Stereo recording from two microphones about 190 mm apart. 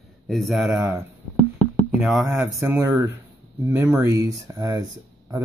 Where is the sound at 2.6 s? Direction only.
15° right (ahead or behind).